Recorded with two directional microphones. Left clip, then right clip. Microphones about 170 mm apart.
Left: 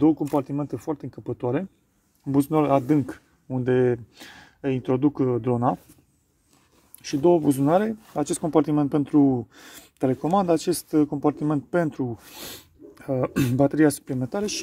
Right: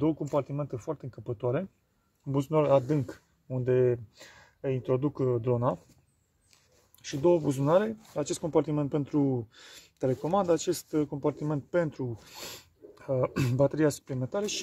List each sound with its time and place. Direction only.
0.0 s speech: 25° left (ahead or behind)
7.0 s speech: 15° left (ahead or behind)